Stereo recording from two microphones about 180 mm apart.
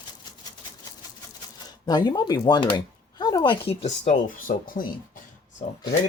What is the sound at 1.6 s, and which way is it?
Speech, 25° left (ahead or behind).